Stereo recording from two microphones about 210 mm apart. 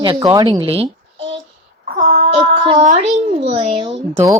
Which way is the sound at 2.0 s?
30° right (ahead or behind).